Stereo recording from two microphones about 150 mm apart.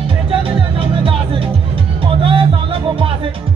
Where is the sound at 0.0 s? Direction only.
35° right (ahead or behind).